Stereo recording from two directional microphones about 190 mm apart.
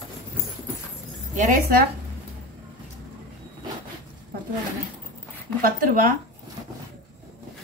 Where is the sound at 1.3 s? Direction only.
45° right (ahead or behind).